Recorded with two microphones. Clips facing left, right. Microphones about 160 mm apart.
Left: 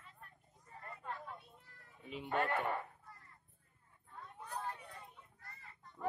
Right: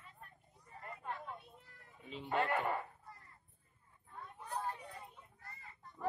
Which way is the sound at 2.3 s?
10° right (ahead or behind).